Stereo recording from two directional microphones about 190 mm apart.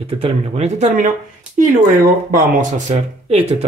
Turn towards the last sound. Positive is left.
turn(degrees=-35)  # may be behind; listen again after turning